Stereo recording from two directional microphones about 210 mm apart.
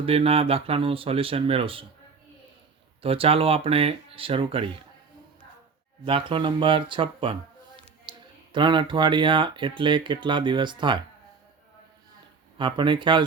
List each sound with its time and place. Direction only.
0.0 s speech: 25° right (ahead or behind)
3.0 s speech: 25° right (ahead or behind)
6.1 s speech: 25° right (ahead or behind)
8.5 s speech: 20° right (ahead or behind)
12.5 s speech: 20° right (ahead or behind)